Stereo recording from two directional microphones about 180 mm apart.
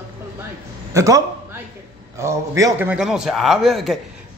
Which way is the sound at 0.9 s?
15° right (ahead or behind).